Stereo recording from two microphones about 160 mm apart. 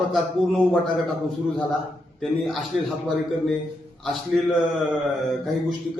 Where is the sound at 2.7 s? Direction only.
5° right (ahead or behind).